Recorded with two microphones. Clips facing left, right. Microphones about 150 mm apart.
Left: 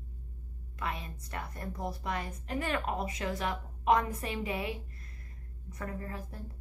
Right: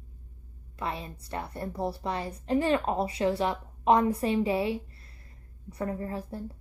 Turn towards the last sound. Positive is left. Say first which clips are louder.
# right 7 dB
turn(degrees=-30)  # may be behind; listen again after turning